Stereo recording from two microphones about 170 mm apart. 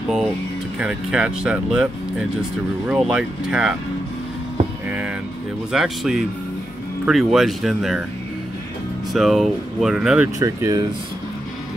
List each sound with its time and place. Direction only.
0.7 s speech: 5° right (ahead or behind)
4.8 s speech: 5° right (ahead or behind)
9.1 s speech: centre (ahead or behind)
10.4 s speech: 20° right (ahead or behind)